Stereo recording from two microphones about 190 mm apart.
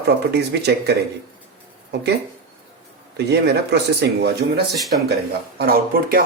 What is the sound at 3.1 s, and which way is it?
Speech, 60° right (ahead or behind).